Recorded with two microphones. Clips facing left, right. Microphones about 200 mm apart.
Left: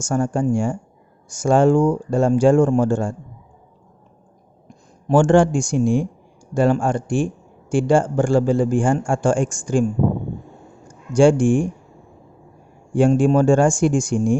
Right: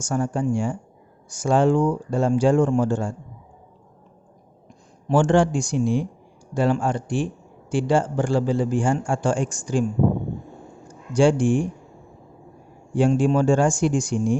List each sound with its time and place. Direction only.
0.0 s a man's voice: 45° left (ahead or behind)
5.0 s a man's voice: 50° left (ahead or behind)
11.1 s a man's voice: 50° left (ahead or behind)
12.9 s a man's voice: 50° left (ahead or behind)